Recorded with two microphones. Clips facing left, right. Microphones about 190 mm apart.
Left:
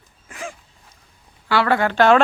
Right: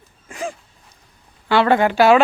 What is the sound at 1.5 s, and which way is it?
Speech, 20° right (ahead or behind).